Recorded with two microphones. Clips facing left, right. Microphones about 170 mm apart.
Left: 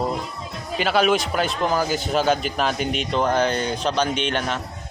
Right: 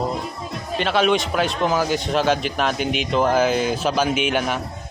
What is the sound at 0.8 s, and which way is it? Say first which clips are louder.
A man's voice: even; centre (ahead or behind).